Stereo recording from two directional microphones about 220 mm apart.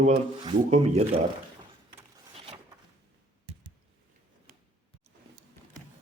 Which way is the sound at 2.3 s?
25° right (ahead or behind).